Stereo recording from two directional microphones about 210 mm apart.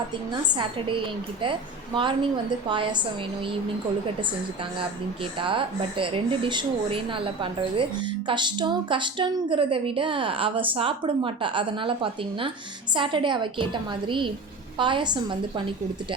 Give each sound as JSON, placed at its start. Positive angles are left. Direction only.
{"t": 0.4, "sound": "a woman's voice", "side_deg": -20}
{"t": 5.4, "sound": "a woman's voice", "side_deg": -25}